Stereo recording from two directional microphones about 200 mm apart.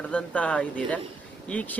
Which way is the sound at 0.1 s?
5° left (ahead or behind).